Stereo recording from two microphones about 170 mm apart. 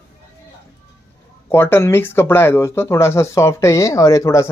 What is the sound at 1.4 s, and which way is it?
Speech, 15° left (ahead or behind).